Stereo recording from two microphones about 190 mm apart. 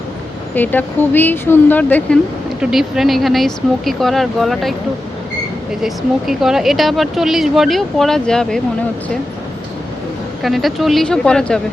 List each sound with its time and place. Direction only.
0.5 s speech: 10° left (ahead or behind)
2.6 s speech: 5° right (ahead or behind)
5.8 s speech: centre (ahead or behind)
10.4 s speech: centre (ahead or behind)